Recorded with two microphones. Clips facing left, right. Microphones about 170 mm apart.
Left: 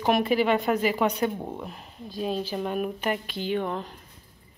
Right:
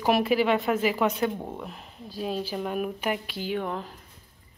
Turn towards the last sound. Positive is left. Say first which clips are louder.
# left 2 dB
turn(degrees=0)  # may be behind; listen again after turning